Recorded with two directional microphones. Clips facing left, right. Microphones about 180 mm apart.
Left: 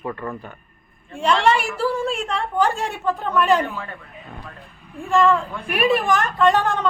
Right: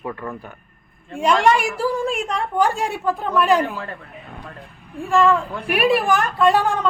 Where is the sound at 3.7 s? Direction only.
40° right (ahead or behind).